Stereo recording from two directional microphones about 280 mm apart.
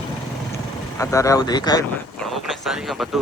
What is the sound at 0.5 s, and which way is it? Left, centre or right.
Speech, centre.